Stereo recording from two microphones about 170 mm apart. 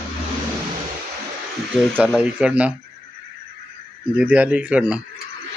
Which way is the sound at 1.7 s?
5° right (ahead or behind).